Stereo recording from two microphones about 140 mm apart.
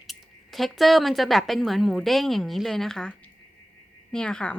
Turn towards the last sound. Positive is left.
turn(degrees=5)  # may be behind; listen again after turning